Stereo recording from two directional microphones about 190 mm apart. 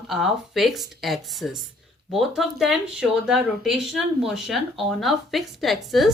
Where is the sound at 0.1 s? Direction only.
Centre (ahead or behind).